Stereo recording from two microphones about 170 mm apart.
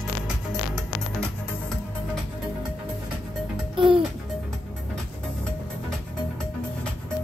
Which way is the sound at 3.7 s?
30° right (ahead or behind).